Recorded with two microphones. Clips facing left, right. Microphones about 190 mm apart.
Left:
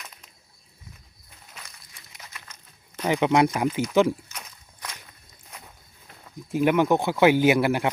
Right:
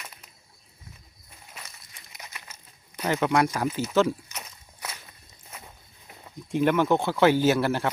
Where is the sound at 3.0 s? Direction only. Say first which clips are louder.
Left 3 dB; 15° left (ahead or behind).